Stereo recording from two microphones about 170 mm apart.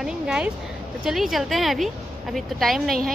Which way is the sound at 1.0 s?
Centre (ahead or behind).